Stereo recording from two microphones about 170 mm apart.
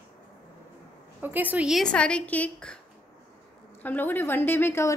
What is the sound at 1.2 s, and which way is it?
A woman's voice, 10° right (ahead or behind).